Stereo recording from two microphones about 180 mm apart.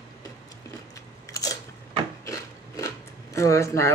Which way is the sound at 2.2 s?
20° left (ahead or behind).